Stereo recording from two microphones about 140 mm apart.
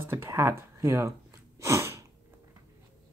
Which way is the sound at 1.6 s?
20° right (ahead or behind).